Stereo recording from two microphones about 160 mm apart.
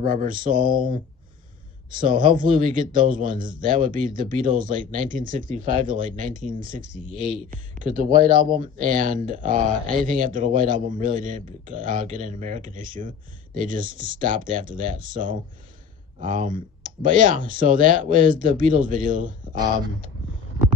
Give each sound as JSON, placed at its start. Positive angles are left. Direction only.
{"t": 0.0, "sound": "a man's voice", "side_deg": -60}
{"t": 19.4, "sound": "speech", "side_deg": -30}